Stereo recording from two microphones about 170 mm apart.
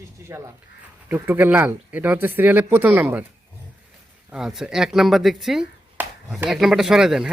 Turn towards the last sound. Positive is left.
turn(degrees=-5)  # may be behind; listen again after turning